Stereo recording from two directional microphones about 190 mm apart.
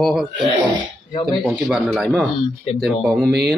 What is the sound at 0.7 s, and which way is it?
Speech, 25° left (ahead or behind).